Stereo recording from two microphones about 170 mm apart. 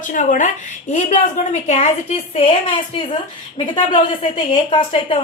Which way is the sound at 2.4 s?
30° left (ahead or behind).